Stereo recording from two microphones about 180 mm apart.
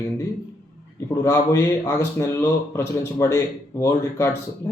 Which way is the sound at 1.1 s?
15° left (ahead or behind).